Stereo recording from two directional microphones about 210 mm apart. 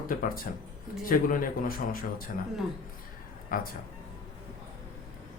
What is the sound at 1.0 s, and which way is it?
Speech, 40° left (ahead or behind).